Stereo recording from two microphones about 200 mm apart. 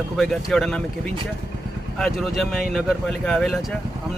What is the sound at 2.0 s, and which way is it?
Speech, centre (ahead or behind).